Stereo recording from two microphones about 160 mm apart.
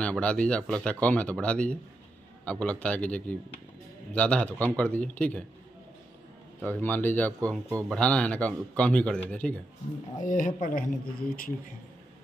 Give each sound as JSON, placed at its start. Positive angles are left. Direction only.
{"t": 0.0, "sound": "a man's voice", "side_deg": 5}
{"t": 6.6, "sound": "a man's voice", "side_deg": 10}
{"t": 10.2, "sound": "speech", "side_deg": 55}